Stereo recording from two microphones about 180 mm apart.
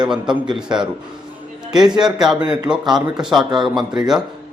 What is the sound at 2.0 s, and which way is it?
Speech, 5° right (ahead or behind).